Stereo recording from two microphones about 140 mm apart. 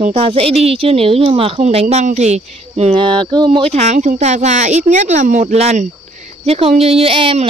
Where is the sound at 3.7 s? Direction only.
60° right (ahead or behind).